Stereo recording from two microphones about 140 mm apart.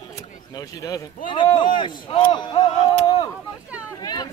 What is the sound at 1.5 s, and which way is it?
Speech, 35° left (ahead or behind).